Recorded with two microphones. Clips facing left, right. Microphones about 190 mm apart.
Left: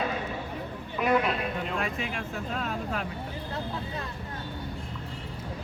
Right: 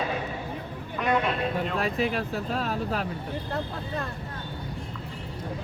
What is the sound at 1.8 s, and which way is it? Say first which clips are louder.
Speech: right 6 dB; 35° right (ahead or behind).